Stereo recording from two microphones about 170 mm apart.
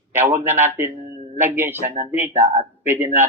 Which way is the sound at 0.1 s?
10° right (ahead or behind).